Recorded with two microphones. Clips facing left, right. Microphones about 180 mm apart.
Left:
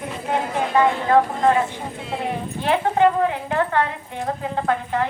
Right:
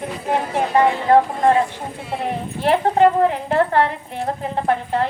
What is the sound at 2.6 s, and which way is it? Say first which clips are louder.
A woman's voice: right 3 dB; 40° right (ahead or behind).